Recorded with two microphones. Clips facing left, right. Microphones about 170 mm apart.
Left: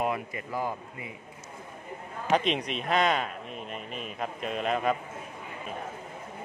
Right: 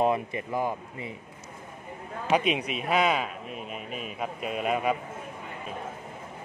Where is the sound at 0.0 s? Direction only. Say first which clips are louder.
Right 5 dB; 25° right (ahead or behind).